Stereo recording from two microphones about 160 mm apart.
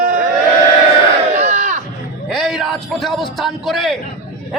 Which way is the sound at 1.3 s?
45° right (ahead or behind).